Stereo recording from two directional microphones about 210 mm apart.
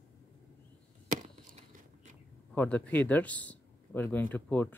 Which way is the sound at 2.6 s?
5° left (ahead or behind).